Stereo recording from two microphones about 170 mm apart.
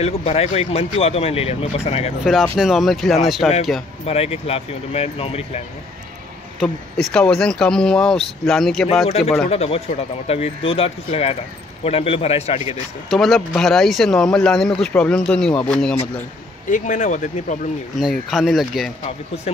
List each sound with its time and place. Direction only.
0.0 s speech: 35° left (ahead or behind)
2.5 s speech: centre (ahead or behind)
4.0 s speech: 35° left (ahead or behind)
6.6 s speech: centre (ahead or behind)
9.0 s speech: 35° left (ahead or behind)
13.1 s speech: centre (ahead or behind)
16.7 s speech: 45° left (ahead or behind)
18.3 s speech: centre (ahead or behind)
19.0 s speech: 35° left (ahead or behind)